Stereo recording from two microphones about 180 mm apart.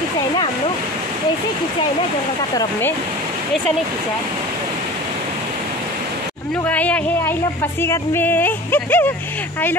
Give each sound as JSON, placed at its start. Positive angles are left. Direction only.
{"t": 6.7, "sound": "speech", "side_deg": 10}